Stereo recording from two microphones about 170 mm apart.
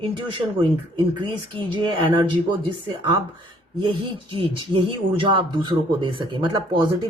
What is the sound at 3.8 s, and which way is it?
Speech, 30° right (ahead or behind).